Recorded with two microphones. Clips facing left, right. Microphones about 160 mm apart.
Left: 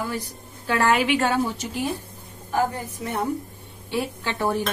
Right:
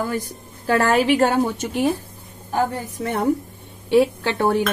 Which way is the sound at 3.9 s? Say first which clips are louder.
Right 10 dB; 60° right (ahead or behind).